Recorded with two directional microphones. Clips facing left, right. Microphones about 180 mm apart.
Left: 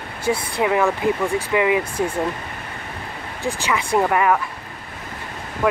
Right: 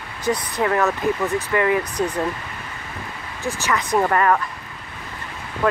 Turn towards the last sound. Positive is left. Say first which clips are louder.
# left 1 dB
turn(degrees=10)  # may be behind; listen again after turning